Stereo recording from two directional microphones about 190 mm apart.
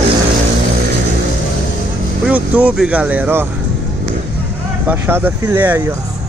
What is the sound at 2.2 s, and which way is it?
Speech, 10° right (ahead or behind).